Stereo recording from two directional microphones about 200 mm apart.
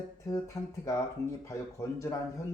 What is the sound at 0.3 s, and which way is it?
Speech, 15° left (ahead or behind).